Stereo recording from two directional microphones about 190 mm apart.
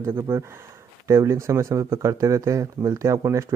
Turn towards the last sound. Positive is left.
turn(degrees=-15)  # may be behind; listen again after turning